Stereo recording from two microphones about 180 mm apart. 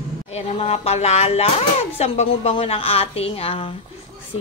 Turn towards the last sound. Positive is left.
turn(degrees=30)  # may be behind; listen again after turning